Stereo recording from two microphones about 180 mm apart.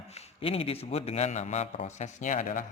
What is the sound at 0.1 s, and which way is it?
A man's voice, 35° left (ahead or behind).